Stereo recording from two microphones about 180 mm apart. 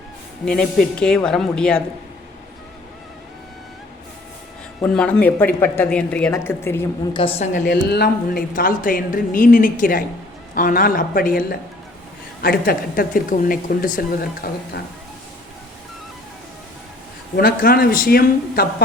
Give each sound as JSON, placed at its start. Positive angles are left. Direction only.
{"t": 0.4, "sound": "a woman's voice", "side_deg": 5}
{"t": 4.9, "sound": "a woman's voice", "side_deg": 5}
{"t": 7.1, "sound": "a woman's voice", "side_deg": 30}
{"t": 7.6, "sound": "a woman's voice", "side_deg": 70}
{"t": 17.3, "sound": "speech", "side_deg": 55}